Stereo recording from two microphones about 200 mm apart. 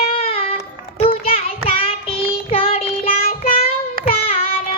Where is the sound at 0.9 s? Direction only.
30° left (ahead or behind).